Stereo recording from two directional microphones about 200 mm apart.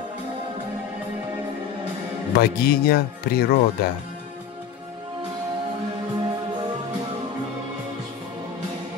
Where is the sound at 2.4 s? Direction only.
50° left (ahead or behind).